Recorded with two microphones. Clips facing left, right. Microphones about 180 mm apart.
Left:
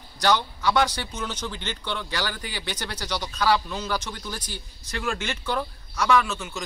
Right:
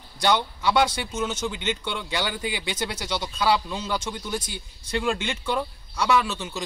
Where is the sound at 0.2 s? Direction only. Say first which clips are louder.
Even; 25° right (ahead or behind).